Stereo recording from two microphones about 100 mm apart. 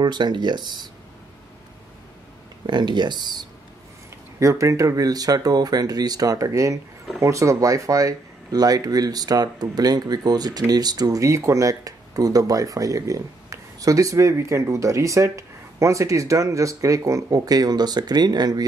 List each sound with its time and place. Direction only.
0.0 s speech: 45° right (ahead or behind)
2.6 s speech: 50° right (ahead or behind)
4.4 s speech: 30° right (ahead or behind)